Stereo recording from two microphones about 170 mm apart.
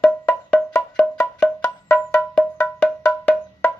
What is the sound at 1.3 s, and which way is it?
Music, 15° left (ahead or behind).